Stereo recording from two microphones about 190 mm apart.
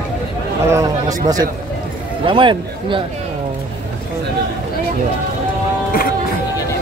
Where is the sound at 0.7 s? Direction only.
15° right (ahead or behind).